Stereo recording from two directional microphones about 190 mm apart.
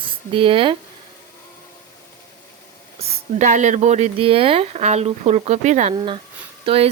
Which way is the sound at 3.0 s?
40° right (ahead or behind).